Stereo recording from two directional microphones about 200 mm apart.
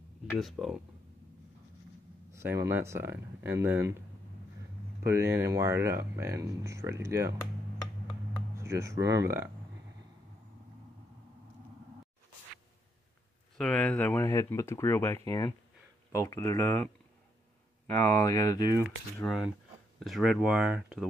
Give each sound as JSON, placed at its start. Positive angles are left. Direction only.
{"t": 0.3, "sound": "speech", "side_deg": 0}
{"t": 2.3, "sound": "speech", "side_deg": -15}
{"t": 5.0, "sound": "speech", "side_deg": -15}
{"t": 8.5, "sound": "speech", "side_deg": -15}
{"t": 13.6, "sound": "speech", "side_deg": 5}
{"t": 18.2, "sound": "speech", "side_deg": 20}
{"t": 20.0, "sound": "speech", "side_deg": 0}